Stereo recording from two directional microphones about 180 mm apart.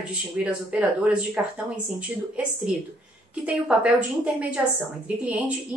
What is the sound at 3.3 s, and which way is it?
Speech, 5° right (ahead or behind).